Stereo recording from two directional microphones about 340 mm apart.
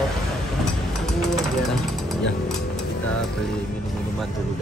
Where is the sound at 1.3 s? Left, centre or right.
Centre.